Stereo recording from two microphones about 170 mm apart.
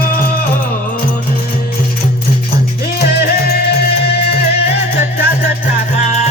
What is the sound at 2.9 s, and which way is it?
Music, 70° left (ahead or behind).